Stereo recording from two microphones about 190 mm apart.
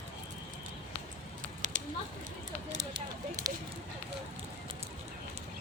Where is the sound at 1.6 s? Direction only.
40° right (ahead or behind).